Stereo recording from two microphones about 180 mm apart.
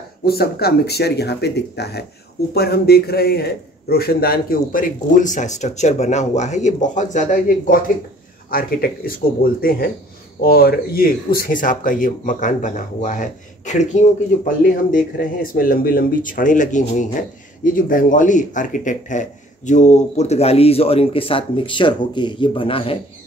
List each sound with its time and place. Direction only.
0.2 s a man's voice: 60° left (ahead or behind); by 22.9 s 30° left (ahead or behind)